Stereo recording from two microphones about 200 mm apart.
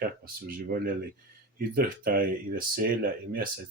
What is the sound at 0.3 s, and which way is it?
Speech, 45° right (ahead or behind).